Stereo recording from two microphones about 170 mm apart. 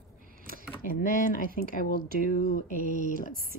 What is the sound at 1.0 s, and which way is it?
Speech, 55° left (ahead or behind).